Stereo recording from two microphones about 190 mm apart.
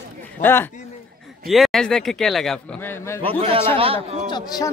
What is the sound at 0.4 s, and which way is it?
Speech, 10° left (ahead or behind).